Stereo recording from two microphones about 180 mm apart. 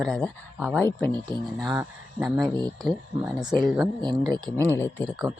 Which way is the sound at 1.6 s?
15° right (ahead or behind).